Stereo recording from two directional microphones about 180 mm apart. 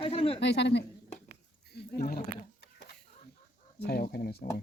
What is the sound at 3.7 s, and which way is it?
Speech, 65° left (ahead or behind).